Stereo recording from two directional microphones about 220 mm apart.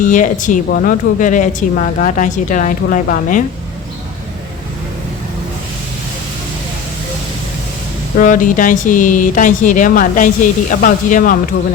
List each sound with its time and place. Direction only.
0.0 s speech: 35° left (ahead or behind)
8.2 s speech: 35° left (ahead or behind)